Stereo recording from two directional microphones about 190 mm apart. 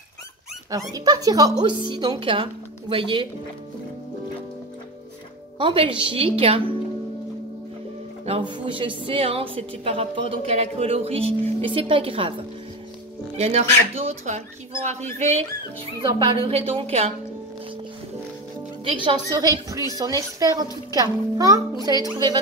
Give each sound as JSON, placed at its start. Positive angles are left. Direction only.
{"t": 0.9, "sound": "a woman's voice", "side_deg": -20}
{"t": 5.6, "sound": "a woman's voice", "side_deg": -25}
{"t": 8.3, "sound": "a woman's voice", "side_deg": -25}
{"t": 13.4, "sound": "a woman's voice", "side_deg": -35}
{"t": 19.0, "sound": "a woman's voice", "side_deg": -20}